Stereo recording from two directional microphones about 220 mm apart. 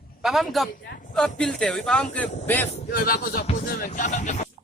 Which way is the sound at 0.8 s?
45° left (ahead or behind).